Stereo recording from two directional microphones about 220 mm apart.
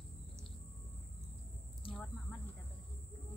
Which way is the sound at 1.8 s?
25° left (ahead or behind).